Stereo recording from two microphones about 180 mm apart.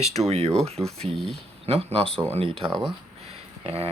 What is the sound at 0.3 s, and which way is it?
Speech, 35° right (ahead or behind).